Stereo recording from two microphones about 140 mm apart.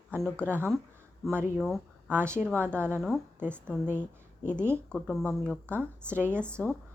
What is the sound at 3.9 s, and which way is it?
Speech, 15° right (ahead or behind).